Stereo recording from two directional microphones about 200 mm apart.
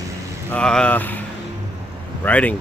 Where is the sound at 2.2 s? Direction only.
10° left (ahead or behind).